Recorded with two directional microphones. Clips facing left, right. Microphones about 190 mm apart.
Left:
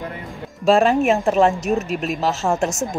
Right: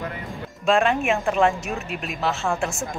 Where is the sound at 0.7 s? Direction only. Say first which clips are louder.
Left 5 dB; 35° left (ahead or behind).